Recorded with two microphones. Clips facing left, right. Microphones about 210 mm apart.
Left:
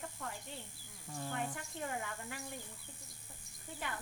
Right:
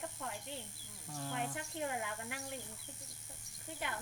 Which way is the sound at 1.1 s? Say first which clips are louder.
Left 1 dB; 5° left (ahead or behind).